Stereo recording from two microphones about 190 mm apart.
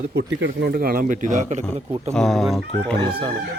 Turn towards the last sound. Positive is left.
turn(degrees=-25)  # may be behind; listen again after turning